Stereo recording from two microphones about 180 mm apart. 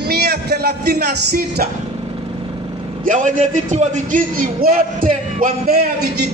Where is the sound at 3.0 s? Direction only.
45° right (ahead or behind).